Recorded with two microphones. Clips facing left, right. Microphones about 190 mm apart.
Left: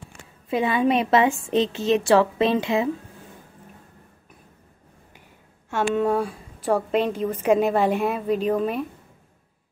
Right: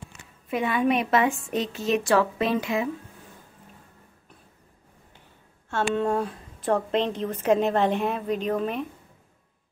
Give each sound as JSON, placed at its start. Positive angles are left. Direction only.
{"t": 0.5, "sound": "a woman's voice", "side_deg": 30}
{"t": 5.7, "sound": "a woman's voice", "side_deg": 10}